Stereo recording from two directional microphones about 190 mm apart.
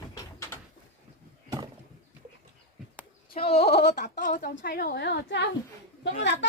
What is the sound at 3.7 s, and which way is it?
Speech, 60° left (ahead or behind).